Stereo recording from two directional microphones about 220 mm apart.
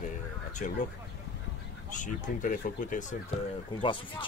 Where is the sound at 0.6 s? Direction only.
35° left (ahead or behind).